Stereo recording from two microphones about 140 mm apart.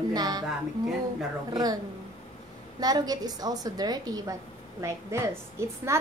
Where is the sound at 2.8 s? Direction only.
30° right (ahead or behind).